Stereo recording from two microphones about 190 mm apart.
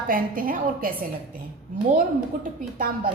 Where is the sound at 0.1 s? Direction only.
50° right (ahead or behind).